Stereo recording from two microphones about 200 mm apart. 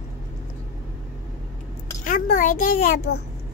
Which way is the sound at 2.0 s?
45° left (ahead or behind).